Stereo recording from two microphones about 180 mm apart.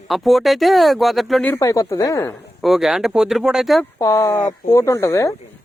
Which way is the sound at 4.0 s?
15° left (ahead or behind).